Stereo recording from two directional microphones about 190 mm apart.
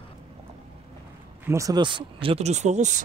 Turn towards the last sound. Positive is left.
turn(degrees=-40)  # may be behind; listen again after turning